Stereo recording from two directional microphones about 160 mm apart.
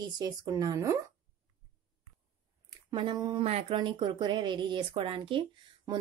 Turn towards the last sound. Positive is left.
turn(degrees=-30)  # may be behind; listen again after turning